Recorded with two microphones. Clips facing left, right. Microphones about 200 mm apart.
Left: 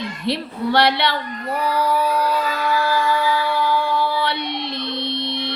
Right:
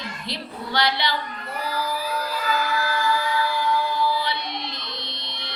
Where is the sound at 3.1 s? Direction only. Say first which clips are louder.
Left 4 dB; 65° left (ahead or behind).